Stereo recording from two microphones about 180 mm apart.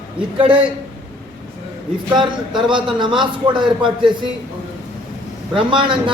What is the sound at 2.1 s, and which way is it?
A man's voice, 25° right (ahead or behind).